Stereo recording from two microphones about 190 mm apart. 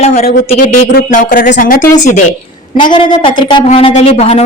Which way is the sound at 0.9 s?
45° left (ahead or behind).